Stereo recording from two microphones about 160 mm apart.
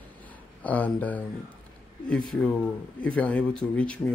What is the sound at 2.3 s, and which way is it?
Speech, 5° left (ahead or behind).